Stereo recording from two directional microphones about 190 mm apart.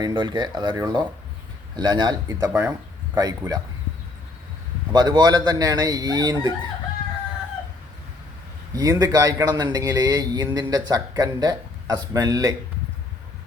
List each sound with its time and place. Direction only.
0.0 s a man's voice: 25° right (ahead or behind)
4.9 s a man's voice: 20° right (ahead or behind)
8.7 s a man's voice: 20° right (ahead or behind)